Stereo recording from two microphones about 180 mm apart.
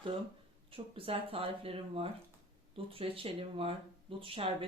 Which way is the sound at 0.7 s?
30° right (ahead or behind).